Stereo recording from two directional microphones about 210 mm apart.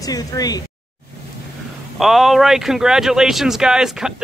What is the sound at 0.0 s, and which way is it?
Speech, 15° left (ahead or behind).